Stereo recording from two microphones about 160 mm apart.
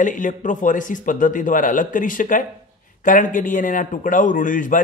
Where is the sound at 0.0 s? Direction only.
55° left (ahead or behind).